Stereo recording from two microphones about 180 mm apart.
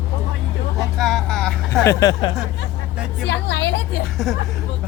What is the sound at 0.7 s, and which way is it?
Vehicle, centre (ahead or behind).